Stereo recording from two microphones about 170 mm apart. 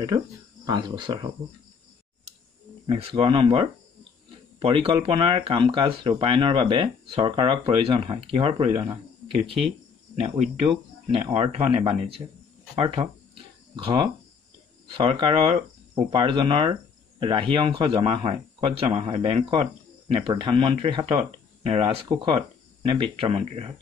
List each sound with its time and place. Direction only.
0.1 s speech: 25° right (ahead or behind)
2.9 s speech: 35° right (ahead or behind)
11.2 s speech: 35° right (ahead or behind)